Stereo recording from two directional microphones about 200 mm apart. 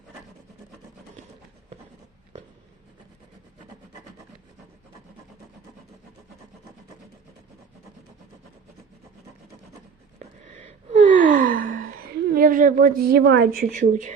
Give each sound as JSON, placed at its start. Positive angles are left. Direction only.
{"t": 10.2, "sound": "gasp", "side_deg": -35}